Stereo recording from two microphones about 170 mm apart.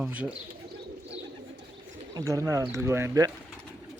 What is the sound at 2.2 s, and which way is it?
Speech, 20° right (ahead or behind).